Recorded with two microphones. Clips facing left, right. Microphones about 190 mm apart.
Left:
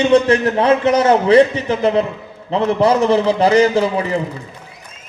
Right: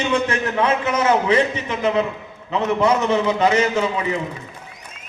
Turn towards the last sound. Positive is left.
turn(degrees=35)  # may be behind; listen again after turning